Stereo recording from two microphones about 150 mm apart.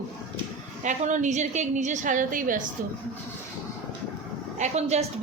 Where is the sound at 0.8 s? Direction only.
55° right (ahead or behind).